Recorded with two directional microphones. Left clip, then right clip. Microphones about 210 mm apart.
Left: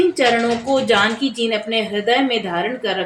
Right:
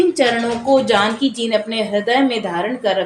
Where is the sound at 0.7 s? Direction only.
30° right (ahead or behind).